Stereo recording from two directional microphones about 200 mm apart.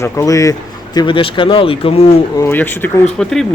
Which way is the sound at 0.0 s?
15° left (ahead or behind).